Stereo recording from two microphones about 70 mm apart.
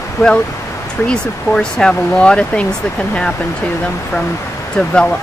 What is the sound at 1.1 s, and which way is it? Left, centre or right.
Speech, centre.